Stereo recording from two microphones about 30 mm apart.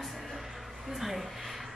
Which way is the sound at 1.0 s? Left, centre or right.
Centre.